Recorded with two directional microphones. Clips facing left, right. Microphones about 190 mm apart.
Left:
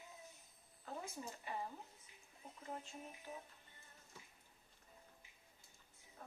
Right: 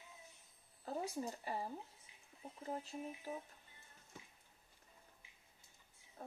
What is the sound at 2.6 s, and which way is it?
Speech, 35° right (ahead or behind).